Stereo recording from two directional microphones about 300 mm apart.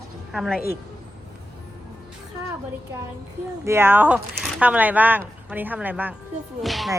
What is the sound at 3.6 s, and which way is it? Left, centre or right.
A woman's voice, centre.